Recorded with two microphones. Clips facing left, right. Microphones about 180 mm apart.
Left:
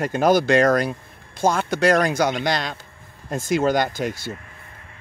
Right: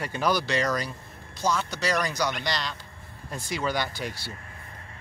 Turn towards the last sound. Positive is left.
turn(degrees=45)  # may be behind; listen again after turning